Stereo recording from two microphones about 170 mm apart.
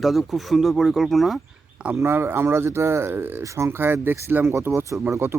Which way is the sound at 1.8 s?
10° right (ahead or behind).